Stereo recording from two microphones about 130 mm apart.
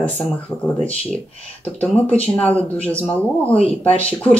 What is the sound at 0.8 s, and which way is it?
Speech, 10° left (ahead or behind).